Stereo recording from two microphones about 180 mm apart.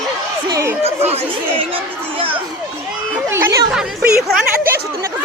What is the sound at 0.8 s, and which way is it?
Speech, 35° right (ahead or behind).